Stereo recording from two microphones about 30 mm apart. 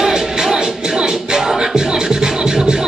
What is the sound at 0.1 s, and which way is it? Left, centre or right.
Music, centre.